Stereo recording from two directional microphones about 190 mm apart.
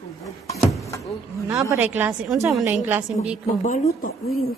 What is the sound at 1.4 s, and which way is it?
A woman's voice, 15° right (ahead or behind).